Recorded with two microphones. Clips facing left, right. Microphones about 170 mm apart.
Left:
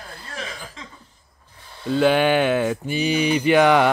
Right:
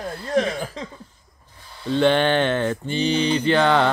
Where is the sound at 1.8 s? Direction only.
5° left (ahead or behind).